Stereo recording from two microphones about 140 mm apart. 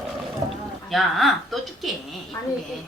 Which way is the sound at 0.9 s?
Centre (ahead or behind).